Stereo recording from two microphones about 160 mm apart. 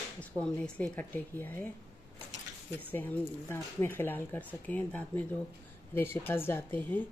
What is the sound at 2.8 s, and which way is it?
Speech, 10° left (ahead or behind).